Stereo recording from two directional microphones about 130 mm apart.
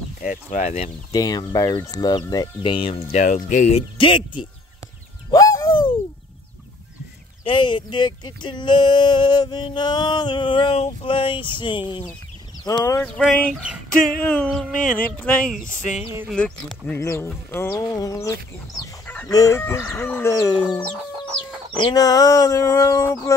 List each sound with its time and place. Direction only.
0.2 s speech: 80° left; by 0.9 s 60° left (ahead or behind)
1.1 s chicken: 30° left (ahead or behind)
1.8 s speech: 30° left (ahead or behind); by 3.2 s 45° left (ahead or behind)
3.2 s speech: 80° left
4.0 s speech: 40° left (ahead or behind)
5.3 s bird: 25° left (ahead or behind)
7.4 s speech: 40° left (ahead or behind)
12.7 s chicken: 30° left (ahead or behind)
13.3 s speech: 10° left (ahead or behind)
17.0 s chicken: 20° left (ahead or behind)
21.9 s chicken: 30° left (ahead or behind)